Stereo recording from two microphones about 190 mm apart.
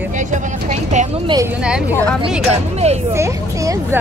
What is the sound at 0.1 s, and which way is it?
Vehicle, 40° right (ahead or behind).